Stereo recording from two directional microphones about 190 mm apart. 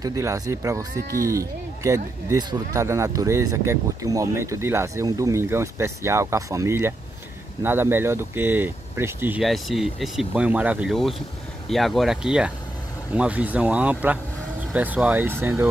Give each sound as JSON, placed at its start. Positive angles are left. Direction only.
{"t": 0.0, "sound": "speech", "side_deg": -15}
{"t": 9.4, "sound": "speech", "side_deg": 0}